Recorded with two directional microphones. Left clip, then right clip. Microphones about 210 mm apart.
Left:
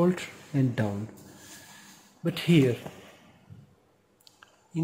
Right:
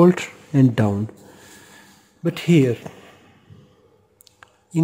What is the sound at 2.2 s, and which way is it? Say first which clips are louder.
Speech: right 6 dB; 35° right (ahead or behind).